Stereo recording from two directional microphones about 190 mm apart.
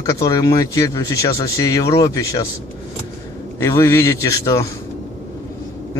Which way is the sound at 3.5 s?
15° left (ahead or behind).